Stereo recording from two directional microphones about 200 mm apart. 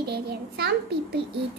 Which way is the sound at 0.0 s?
55° right (ahead or behind).